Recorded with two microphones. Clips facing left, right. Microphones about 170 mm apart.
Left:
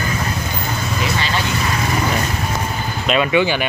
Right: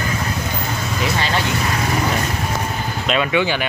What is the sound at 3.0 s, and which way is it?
Speech, 10° left (ahead or behind).